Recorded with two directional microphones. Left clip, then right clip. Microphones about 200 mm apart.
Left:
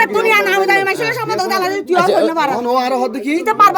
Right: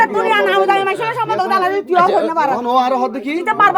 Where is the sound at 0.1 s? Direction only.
50° left (ahead or behind).